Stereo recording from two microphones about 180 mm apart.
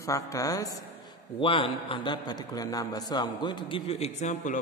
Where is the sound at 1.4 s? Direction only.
30° left (ahead or behind).